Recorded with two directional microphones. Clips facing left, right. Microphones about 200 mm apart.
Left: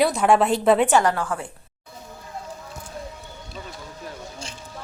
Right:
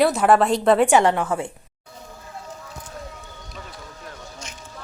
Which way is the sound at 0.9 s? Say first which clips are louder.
Right 3 dB; 20° right (ahead or behind).